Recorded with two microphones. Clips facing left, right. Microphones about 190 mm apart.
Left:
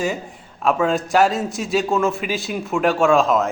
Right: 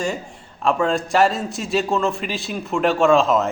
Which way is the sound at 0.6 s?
Centre (ahead or behind).